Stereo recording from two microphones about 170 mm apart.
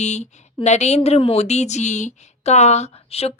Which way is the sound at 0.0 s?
40° left (ahead or behind).